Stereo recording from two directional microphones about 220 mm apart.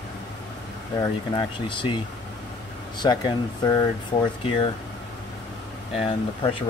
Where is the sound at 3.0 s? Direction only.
20° left (ahead or behind).